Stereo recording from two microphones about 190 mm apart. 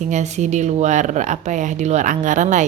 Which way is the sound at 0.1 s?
40° right (ahead or behind).